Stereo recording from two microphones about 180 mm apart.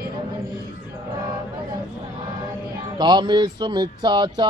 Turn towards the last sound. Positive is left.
turn(degrees=-25)  # may be behind; listen again after turning